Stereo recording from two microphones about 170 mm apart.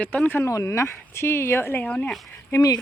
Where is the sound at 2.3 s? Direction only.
15° left (ahead or behind).